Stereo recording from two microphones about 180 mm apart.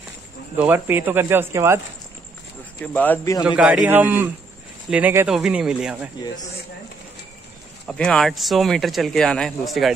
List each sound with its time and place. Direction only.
0.6 s speech: 10° right (ahead or behind)
2.8 s speech: 10° left (ahead or behind)
3.4 s speech: 5° right (ahead or behind)
7.8 s speech: 5° left (ahead or behind)